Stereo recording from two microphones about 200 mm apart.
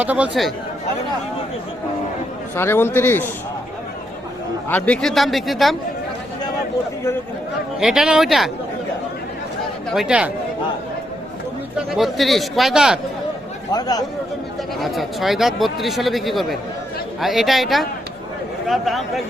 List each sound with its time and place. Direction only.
0.0 s speech: 5° right (ahead or behind)
2.6 s speech: 10° left (ahead or behind)
4.7 s speech: 5° left (ahead or behind)
7.8 s speech: 5° right (ahead or behind)
9.9 s speech: 5° right (ahead or behind)
11.9 s speech: centre (ahead or behind)
13.7 s speech: 20° left (ahead or behind)
14.8 s speech: centre (ahead or behind)